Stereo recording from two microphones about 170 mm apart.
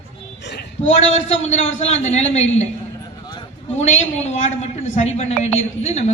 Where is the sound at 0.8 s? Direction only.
40° left (ahead or behind).